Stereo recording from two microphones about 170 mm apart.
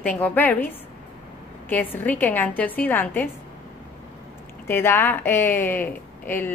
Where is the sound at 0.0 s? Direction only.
10° left (ahead or behind).